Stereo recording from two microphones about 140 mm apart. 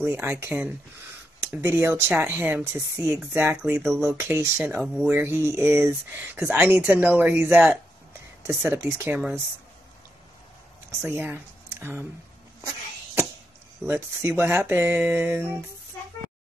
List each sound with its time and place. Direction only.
0.0 s speech: 15° right (ahead or behind)
4.8 s speech: 5° right (ahead or behind)
5.1 s speech: 15° right (ahead or behind)
11.0 s speech: 15° right (ahead or behind)
12.6 s a sound: 20° right (ahead or behind)
13.8 s speech: 15° right (ahead or behind)